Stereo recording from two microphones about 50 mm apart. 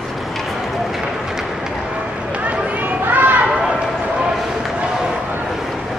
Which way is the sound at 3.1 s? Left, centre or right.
Right.